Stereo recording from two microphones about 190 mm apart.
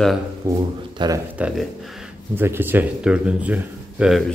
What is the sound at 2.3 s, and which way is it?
Speech, 10° right (ahead or behind).